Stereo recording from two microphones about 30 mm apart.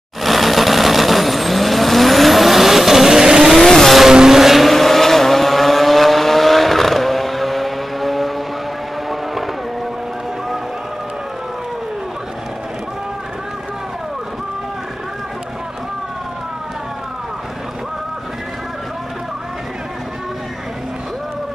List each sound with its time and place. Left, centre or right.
0.2 s vehicle: centre
3.6 s vehicle: centre
4.1 s vehicle: right
4.4 s vehicle: centre
4.6 s vehicle: centre